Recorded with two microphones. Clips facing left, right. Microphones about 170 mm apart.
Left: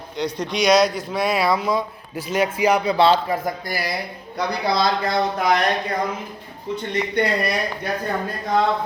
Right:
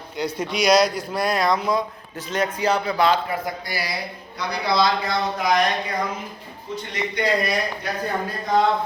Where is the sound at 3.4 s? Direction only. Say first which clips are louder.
Left 3 dB; 50° left (ahead or behind).